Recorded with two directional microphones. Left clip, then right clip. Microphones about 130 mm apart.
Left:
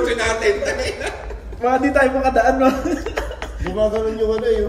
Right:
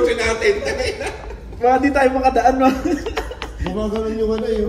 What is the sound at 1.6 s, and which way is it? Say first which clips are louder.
Speech: right 1 dB; 30° left (ahead or behind).